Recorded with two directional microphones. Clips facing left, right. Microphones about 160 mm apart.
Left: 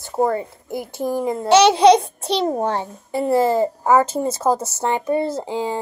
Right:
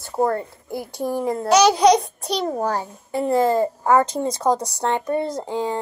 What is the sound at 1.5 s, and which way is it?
A child's voice, 25° left (ahead or behind).